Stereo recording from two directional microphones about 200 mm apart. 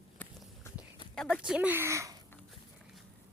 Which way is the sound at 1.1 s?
Centre (ahead or behind).